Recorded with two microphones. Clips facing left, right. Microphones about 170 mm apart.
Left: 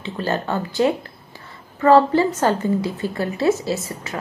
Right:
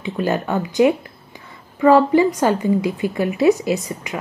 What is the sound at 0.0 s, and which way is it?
A woman's voice, 15° right (ahead or behind).